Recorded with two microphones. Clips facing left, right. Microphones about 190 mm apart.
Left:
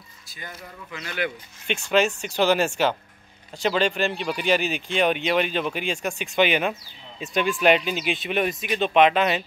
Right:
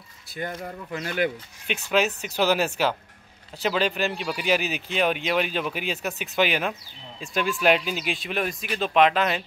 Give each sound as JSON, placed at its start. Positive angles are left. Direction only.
{"t": 0.3, "sound": "speech", "side_deg": -55}
{"t": 1.7, "sound": "speech", "side_deg": -5}